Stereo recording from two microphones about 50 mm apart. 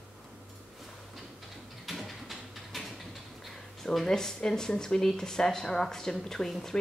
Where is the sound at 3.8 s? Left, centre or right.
Centre.